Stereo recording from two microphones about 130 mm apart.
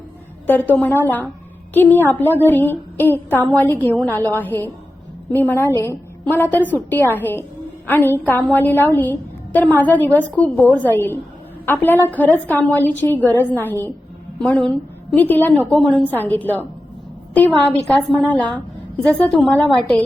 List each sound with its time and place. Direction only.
0.4 s a woman's voice: 15° left (ahead or behind)